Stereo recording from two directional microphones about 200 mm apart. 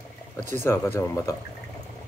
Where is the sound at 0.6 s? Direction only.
10° left (ahead or behind).